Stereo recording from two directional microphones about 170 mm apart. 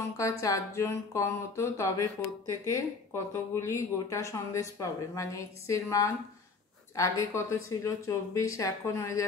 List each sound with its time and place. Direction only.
0.2 s speech: 20° left (ahead or behind)